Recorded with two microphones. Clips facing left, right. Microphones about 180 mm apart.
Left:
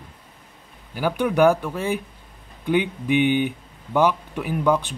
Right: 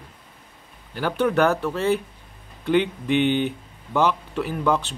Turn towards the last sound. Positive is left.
turn(degrees=15)  # may be behind; listen again after turning